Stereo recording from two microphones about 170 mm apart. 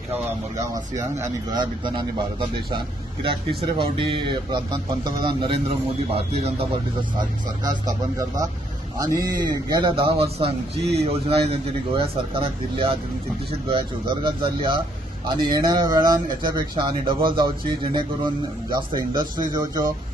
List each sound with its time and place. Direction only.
0.6 s speech: 15° right (ahead or behind)
8.9 s a man's voice: 20° right (ahead or behind)
18.7 s speech: 25° right (ahead or behind)